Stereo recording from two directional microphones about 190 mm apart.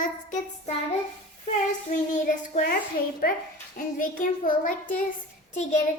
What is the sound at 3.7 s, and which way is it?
A child's voice, 45° left (ahead or behind).